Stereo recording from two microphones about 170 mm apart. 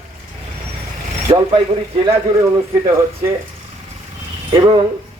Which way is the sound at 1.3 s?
25° right (ahead or behind).